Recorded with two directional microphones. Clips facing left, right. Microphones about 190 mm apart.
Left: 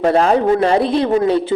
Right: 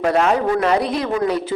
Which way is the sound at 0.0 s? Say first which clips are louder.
Left 4 dB; 30° left (ahead or behind).